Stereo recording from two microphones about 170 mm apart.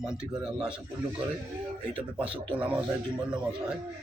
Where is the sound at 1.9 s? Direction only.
30° right (ahead or behind).